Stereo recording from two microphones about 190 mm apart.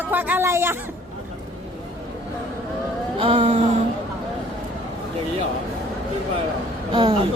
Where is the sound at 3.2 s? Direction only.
30° right (ahead or behind).